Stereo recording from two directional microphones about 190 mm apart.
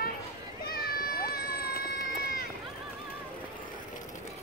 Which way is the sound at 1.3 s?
55° left (ahead or behind).